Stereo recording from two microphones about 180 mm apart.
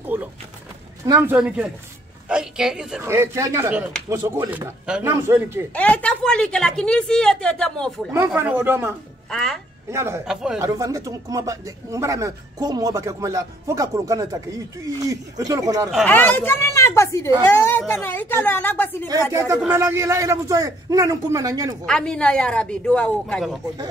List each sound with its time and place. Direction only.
0.1 s a sound: 10° right (ahead or behind)
1.0 s a man's voice: 20° right (ahead or behind)
1.3 s a man's voice: 5° right (ahead or behind)
3.0 s a man's voice: 15° right (ahead or behind)
5.8 s a woman's voice: 5° left (ahead or behind)
8.4 s a man's voice: 10° right (ahead or behind)
9.3 s a woman's voice: centre (ahead or behind)
9.8 s a man's voice: 15° right (ahead or behind)
10.2 s a woman's voice: 5° right (ahead or behind)
10.6 s speech: 20° right (ahead or behind)
16.1 s a woman's voice: 10° left (ahead or behind)
19.3 s a man's voice: 15° right (ahead or behind)
21.8 s a woman's voice: 5° left (ahead or behind)